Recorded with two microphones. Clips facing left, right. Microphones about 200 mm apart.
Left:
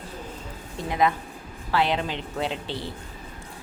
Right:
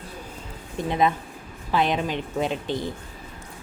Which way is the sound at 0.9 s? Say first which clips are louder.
Right 1 dB; 25° right (ahead or behind).